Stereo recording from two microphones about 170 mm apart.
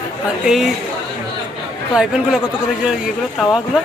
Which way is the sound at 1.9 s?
5° right (ahead or behind).